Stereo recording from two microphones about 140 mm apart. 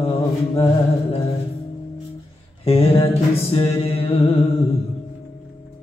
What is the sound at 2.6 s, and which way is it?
Music, 45° left (ahead or behind).